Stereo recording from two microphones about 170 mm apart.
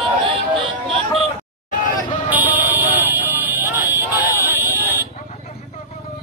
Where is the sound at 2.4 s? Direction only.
10° right (ahead or behind).